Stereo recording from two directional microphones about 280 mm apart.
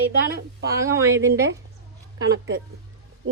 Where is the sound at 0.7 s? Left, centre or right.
Centre.